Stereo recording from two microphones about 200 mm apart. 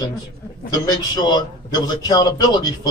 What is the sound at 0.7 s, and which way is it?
A man's voice, 20° left (ahead or behind).